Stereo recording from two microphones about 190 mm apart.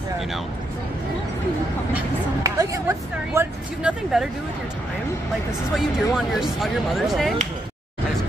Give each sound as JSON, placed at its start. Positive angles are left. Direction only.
{"t": 2.4, "sound": "speech", "side_deg": -15}
{"t": 3.8, "sound": "speech", "side_deg": 0}
{"t": 5.8, "sound": "speech", "side_deg": 0}